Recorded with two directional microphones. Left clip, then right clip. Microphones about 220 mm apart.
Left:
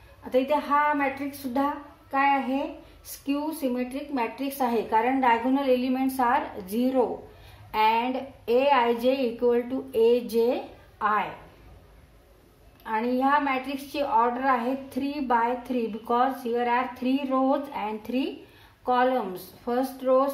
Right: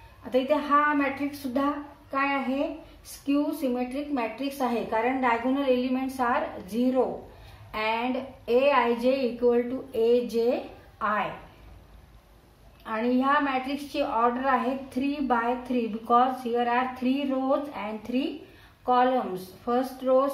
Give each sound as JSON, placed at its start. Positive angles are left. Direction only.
{"t": 0.2, "sound": "a woman's voice", "side_deg": 35}
{"t": 12.8, "sound": "a woman's voice", "side_deg": 35}